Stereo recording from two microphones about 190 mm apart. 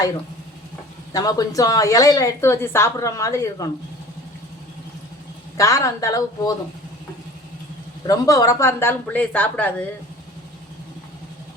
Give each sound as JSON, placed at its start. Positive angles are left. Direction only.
{"t": 1.1, "sound": "a woman's voice", "side_deg": 20}
{"t": 5.5, "sound": "a woman's voice", "side_deg": 15}
{"t": 8.0, "sound": "a woman's voice", "side_deg": 20}